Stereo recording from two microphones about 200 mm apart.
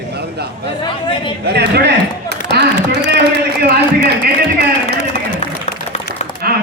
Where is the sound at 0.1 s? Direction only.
55° right (ahead or behind).